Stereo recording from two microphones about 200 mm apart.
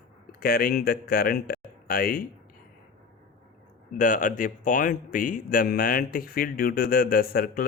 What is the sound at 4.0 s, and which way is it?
Speech, 40° left (ahead or behind).